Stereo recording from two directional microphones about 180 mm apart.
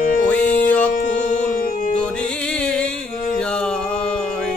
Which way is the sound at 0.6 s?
10° left (ahead or behind).